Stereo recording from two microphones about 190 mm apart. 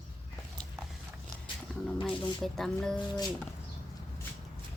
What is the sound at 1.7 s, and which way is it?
Speech, 5° left (ahead or behind).